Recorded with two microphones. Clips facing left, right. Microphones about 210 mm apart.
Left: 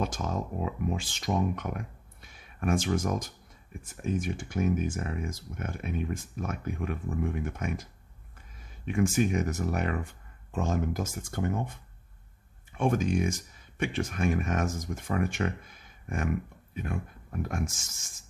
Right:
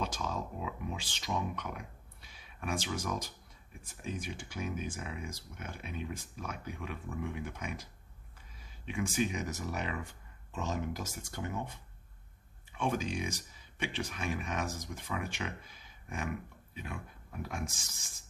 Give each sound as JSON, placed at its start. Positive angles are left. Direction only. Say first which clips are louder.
{"t": 0.0, "sound": "speech", "louder": "left 5 dB", "side_deg": 50}
{"t": 12.7, "sound": "speech", "louder": "left 7 dB", "side_deg": 50}